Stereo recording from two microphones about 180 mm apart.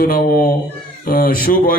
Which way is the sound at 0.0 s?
55° left (ahead or behind).